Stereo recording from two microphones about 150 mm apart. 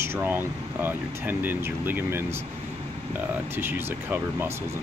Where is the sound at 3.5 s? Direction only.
15° right (ahead or behind).